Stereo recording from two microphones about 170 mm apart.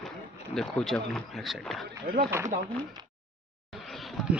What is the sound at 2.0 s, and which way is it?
Speech, 60° right (ahead or behind).